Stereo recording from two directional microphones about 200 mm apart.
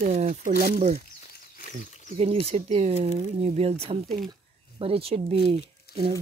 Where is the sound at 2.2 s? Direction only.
30° right (ahead or behind).